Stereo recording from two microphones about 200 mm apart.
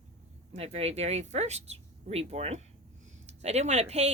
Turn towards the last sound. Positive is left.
turn(degrees=-35)  # may be behind; listen again after turning